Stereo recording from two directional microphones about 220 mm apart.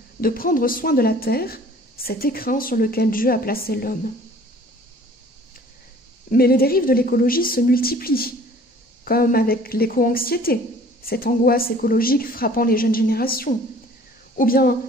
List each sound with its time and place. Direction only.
0.2 s speech: 40° left (ahead or behind)
6.3 s a woman's voice: 45° left (ahead or behind)